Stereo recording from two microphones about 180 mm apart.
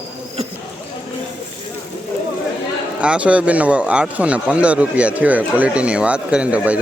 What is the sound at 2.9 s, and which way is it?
Speech, 5° right (ahead or behind).